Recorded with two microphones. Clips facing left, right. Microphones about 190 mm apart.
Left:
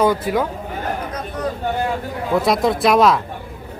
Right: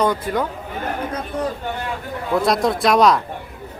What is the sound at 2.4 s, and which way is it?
Speech, centre (ahead or behind).